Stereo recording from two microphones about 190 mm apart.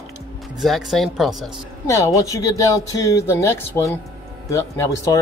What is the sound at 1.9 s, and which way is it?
Speech, 15° left (ahead or behind).